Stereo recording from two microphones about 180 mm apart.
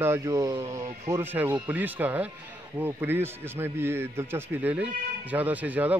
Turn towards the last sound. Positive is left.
turn(degrees=-10)  # may be behind; listen again after turning